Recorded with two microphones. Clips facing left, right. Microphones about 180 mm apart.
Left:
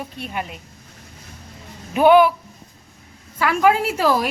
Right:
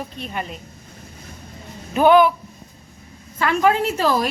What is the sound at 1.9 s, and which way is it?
Speech, 10° left (ahead or behind).